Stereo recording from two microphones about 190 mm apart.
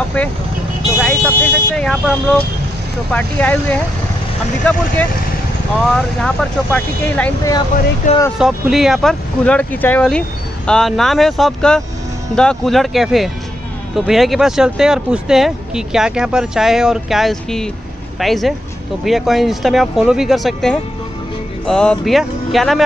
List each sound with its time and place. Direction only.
1.0 s speech: 5° left (ahead or behind)
5.9 s speech: 5° left (ahead or behind)
8.0 s speech: 45° left (ahead or behind)
8.4 s speech: centre (ahead or behind)